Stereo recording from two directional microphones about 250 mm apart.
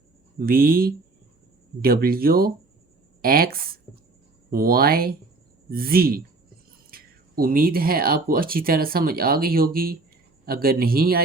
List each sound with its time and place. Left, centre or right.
0.3 s speech: right